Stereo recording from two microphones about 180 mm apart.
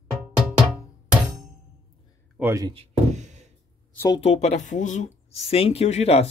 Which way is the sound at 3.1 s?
40° right (ahead or behind).